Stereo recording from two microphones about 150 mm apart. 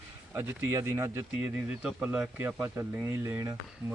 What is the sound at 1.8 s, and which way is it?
Speech, 5° right (ahead or behind).